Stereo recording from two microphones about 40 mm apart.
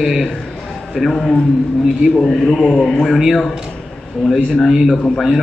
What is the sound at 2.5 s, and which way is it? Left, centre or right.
Speech, left.